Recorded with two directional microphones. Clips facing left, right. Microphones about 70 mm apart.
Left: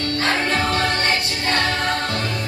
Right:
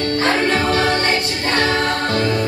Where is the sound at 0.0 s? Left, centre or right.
Right.